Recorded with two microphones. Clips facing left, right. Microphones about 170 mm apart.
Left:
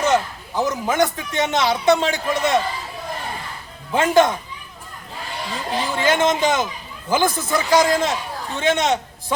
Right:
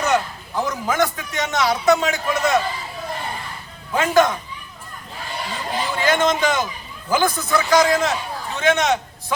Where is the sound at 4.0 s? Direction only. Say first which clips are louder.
Left 1 dB; 25° left (ahead or behind).